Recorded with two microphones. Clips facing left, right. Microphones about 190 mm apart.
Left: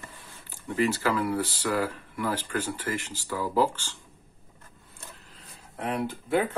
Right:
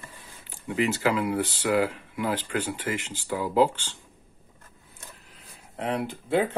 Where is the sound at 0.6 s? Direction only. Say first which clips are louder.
Right 1 dB; 15° right (ahead or behind).